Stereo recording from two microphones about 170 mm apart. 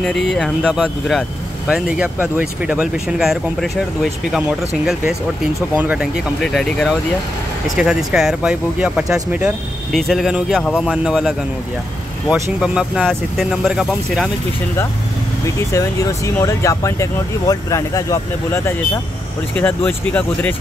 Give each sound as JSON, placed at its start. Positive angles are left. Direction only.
{"t": 0.3, "sound": "speech", "side_deg": 5}
{"t": 15.4, "sound": "speech", "side_deg": 20}